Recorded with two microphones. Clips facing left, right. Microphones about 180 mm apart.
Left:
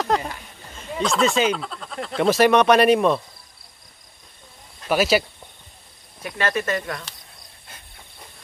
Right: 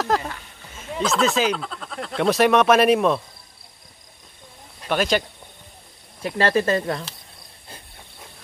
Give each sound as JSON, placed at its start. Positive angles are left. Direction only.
{"t": 0.1, "sound": "a sound", "side_deg": 0}
{"t": 0.7, "sound": "speech", "side_deg": 0}
{"t": 4.8, "sound": "speech", "side_deg": 5}
{"t": 6.2, "sound": "speech", "side_deg": -30}